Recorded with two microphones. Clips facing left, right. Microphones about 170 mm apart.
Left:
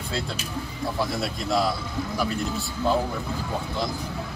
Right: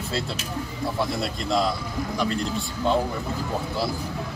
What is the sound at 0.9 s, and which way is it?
Speech, centre (ahead or behind).